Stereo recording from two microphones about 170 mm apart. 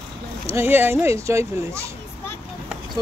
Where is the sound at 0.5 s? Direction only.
15° right (ahead or behind).